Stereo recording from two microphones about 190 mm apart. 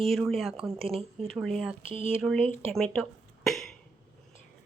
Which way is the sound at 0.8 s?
30° right (ahead or behind).